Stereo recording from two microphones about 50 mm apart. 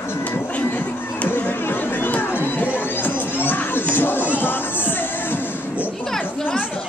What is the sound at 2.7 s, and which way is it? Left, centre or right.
Crowd, left.